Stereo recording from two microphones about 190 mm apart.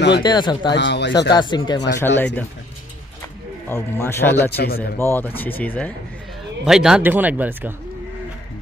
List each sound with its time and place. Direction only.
0.1 s speech: 25° left (ahead or behind)
0.7 s speech: 70° left (ahead or behind)
1.3 s speech: 25° left (ahead or behind)
2.1 s speech: 10° left (ahead or behind)
3.6 s speech: 15° left (ahead or behind)
4.4 s a man's voice: 55° left (ahead or behind)
4.9 s speech: 10° left (ahead or behind)
6.6 s speech: 5° right (ahead or behind)